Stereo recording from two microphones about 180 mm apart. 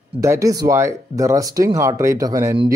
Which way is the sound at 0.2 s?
15° right (ahead or behind).